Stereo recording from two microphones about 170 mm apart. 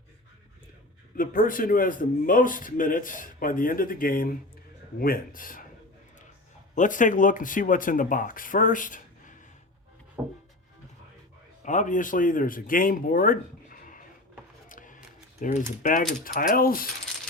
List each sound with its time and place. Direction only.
1.1 s a man's voice: 55° left (ahead or behind)
4.9 s mechanisms: 60° left (ahead or behind)
6.7 s a man's voice: 50° left (ahead or behind)
10.2 s music: 10° right (ahead or behind)
11.6 s a man's voice: 45° left (ahead or behind)
14.7 s a sound: 50° left (ahead or behind)
15.4 s a man's voice: 45° left (ahead or behind)
16.2 s mechanisms: 55° left (ahead or behind)